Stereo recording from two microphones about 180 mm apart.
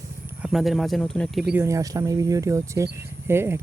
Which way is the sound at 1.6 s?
15° right (ahead or behind).